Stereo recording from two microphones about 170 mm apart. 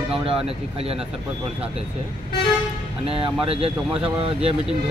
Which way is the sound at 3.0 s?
35° right (ahead or behind).